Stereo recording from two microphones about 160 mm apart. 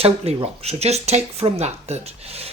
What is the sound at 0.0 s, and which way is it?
Speech, 40° right (ahead or behind).